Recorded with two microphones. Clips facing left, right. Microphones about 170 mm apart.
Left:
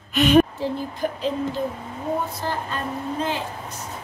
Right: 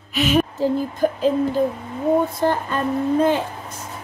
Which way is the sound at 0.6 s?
45° right (ahead or behind).